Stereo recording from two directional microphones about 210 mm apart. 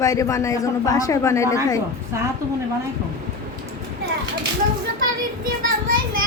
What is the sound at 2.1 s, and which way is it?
Speech, 15° right (ahead or behind).